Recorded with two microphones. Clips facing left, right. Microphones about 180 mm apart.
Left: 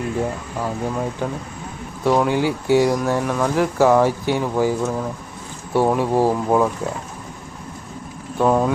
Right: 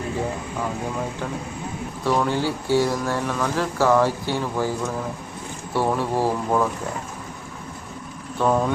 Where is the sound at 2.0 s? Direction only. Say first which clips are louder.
Left 4 dB; 15° left (ahead or behind).